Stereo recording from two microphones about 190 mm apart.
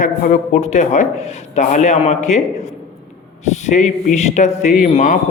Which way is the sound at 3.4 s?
40° left (ahead or behind).